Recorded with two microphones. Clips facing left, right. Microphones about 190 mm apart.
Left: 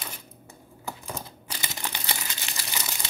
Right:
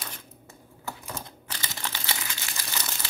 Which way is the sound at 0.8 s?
10° left (ahead or behind).